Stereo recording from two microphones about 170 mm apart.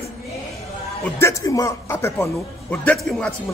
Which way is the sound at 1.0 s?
15° left (ahead or behind).